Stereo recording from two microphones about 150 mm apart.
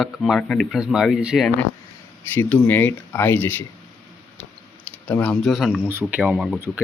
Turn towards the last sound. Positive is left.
turn(degrees=0)  # may be behind; listen again after turning